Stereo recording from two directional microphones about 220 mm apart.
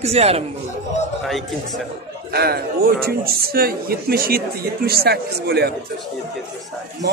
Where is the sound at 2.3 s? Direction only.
45° right (ahead or behind).